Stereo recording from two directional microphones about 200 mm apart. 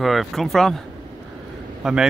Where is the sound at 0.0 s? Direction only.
Centre (ahead or behind).